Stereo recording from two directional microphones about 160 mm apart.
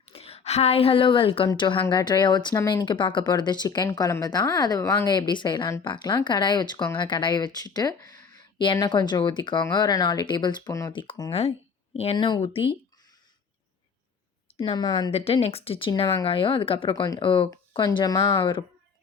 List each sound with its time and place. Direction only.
0.0 s a woman's voice: 40° left (ahead or behind)
12.1 s speech: 25° left (ahead or behind)
14.5 s speech: 35° left (ahead or behind)
15.1 s speech: 40° left (ahead or behind)